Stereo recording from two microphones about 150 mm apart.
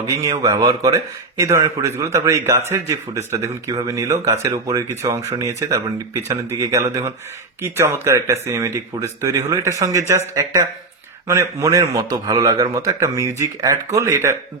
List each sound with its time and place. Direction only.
0.0 s speech: 20° right (ahead or behind)